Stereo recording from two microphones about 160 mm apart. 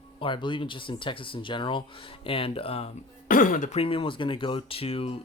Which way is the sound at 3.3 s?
55° left (ahead or behind).